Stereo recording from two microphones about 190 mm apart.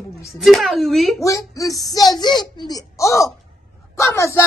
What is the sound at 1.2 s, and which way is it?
A child's voice, 15° left (ahead or behind).